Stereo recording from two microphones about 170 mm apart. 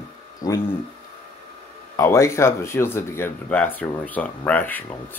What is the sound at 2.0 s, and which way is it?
Speech, 15° left (ahead or behind).